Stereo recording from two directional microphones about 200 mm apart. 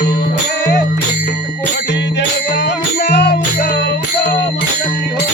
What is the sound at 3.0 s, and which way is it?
Music, 60° left (ahead or behind).